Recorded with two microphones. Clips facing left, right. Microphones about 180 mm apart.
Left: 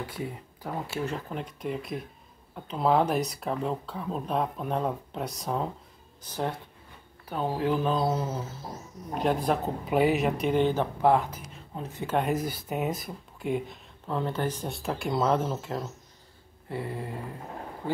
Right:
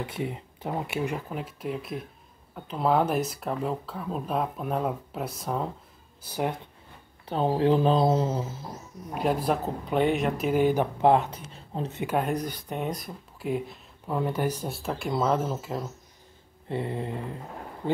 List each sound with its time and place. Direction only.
0.0 s speech: 20° right (ahead or behind)
1.3 s speech: 5° right (ahead or behind)
6.2 s speech: 10° right (ahead or behind)
7.2 s speech: 25° right (ahead or behind)
9.1 s speech: 5° right (ahead or behind); by 12.0 s 30° right (ahead or behind)
12.2 s speech: 5° left (ahead or behind)
16.6 s speech: 25° right (ahead or behind)